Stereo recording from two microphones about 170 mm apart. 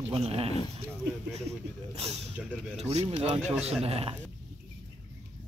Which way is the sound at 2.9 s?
35° right (ahead or behind).